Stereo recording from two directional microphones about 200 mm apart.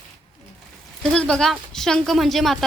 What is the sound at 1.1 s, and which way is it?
A woman's voice, 5° left (ahead or behind).